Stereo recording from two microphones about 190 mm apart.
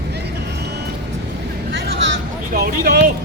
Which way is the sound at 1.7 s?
65° right (ahead or behind).